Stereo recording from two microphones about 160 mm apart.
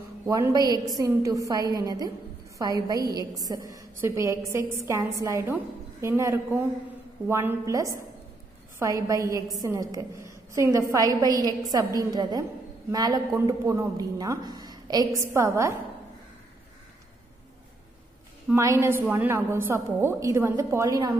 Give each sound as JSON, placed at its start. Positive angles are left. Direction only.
{"t": 0.3, "sound": "a woman's voice", "side_deg": -25}
{"t": 18.5, "sound": "a woman's voice", "side_deg": -20}